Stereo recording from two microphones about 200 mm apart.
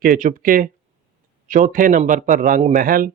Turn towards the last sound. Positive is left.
turn(degrees=-45)  # may be behind; listen again after turning